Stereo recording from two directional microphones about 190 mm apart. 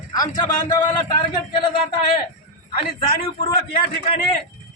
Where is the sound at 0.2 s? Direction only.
20° left (ahead or behind).